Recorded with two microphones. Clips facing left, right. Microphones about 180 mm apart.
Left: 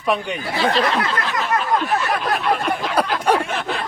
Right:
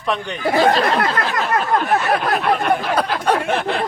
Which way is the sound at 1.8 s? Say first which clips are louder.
Right 3 dB; 55° right (ahead or behind).